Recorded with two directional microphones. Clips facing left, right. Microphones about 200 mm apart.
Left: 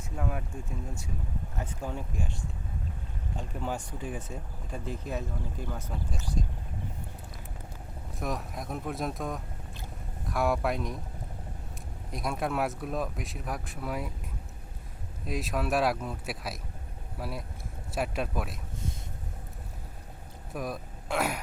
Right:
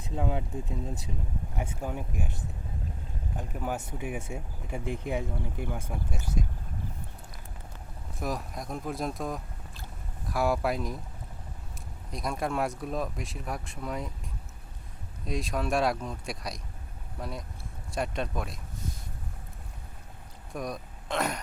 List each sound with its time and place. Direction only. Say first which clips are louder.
0.2 s speech: right 4 dB; 20° right (ahead or behind)
8.2 s speech: right 1 dB; centre (ahead or behind)
12.1 s speech: even; centre (ahead or behind)
15.3 s speech: even; 5° left (ahead or behind)
20.5 s speech: even; 5° left (ahead or behind)